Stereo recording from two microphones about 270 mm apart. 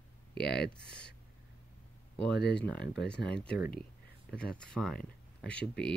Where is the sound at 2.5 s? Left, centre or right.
Centre.